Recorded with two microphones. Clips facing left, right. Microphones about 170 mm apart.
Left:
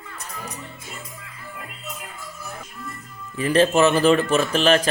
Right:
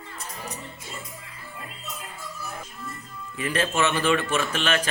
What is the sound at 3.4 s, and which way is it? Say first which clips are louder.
Speech: left 8 dB; 35° left (ahead or behind).